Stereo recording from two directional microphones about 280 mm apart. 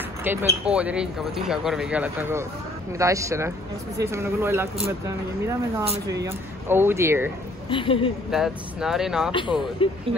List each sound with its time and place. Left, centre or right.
0.2 s a man's voice: centre
7.7 s a woman's voice: centre
8.3 s speech: centre
9.8 s a woman's voice: centre